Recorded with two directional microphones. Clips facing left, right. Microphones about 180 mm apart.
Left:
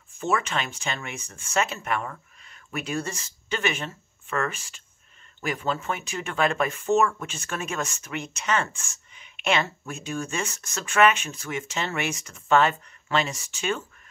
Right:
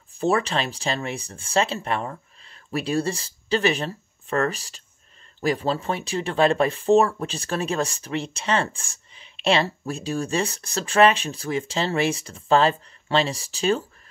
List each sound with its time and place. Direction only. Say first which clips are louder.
0.1 s speech: right 4 dB; 35° right (ahead or behind)